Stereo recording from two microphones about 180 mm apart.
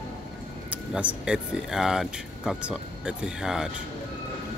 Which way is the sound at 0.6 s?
5° right (ahead or behind).